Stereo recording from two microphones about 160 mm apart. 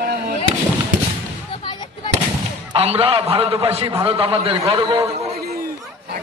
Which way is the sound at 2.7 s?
35° right (ahead or behind).